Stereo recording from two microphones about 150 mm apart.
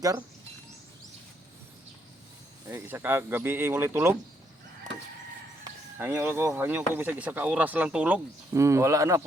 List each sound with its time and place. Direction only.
2.6 s speech: 15° right (ahead or behind)
6.0 s speech: 15° right (ahead or behind)
8.5 s speech: 20° right (ahead or behind)